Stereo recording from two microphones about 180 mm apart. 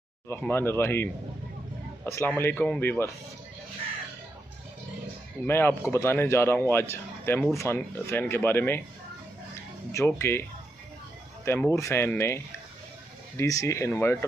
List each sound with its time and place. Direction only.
0.3 s speech: 10° left (ahead or behind)
5.5 s speech: 10° left (ahead or behind)
9.9 s speech: 15° left (ahead or behind)
11.4 s speech: 15° left (ahead or behind)
13.4 s speech: 15° left (ahead or behind)